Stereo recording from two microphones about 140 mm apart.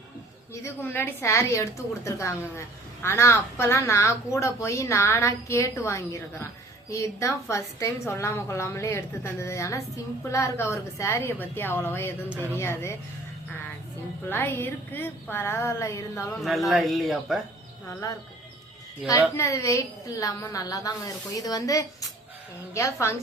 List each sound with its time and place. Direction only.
0.5 s a woman's voice: 20° left (ahead or behind)
14.3 s a woman's voice: 15° left (ahead or behind)
16.6 s speech: centre (ahead or behind)
17.8 s a woman's voice: 25° left (ahead or behind)